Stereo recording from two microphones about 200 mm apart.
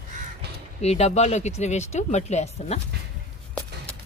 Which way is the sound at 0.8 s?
35° left (ahead or behind).